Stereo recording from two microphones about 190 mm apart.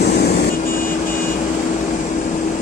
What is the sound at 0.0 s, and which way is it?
Vehicle, 55° left (ahead or behind).